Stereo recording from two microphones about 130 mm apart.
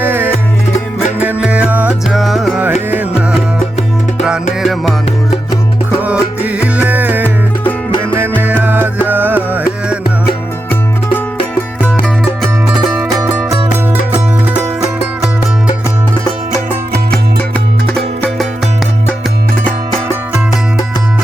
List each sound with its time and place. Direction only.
0.0 s music: 15° right (ahead or behind)
2.0 s music: centre (ahead or behind)
2.9 s music: 15° right (ahead or behind)
4.6 s music: centre (ahead or behind)
6.0 s music: 10° right (ahead or behind)
8.4 s music: 15° right (ahead or behind)
12.9 s music: 10° right (ahead or behind)
17.9 s music: 5° left (ahead or behind)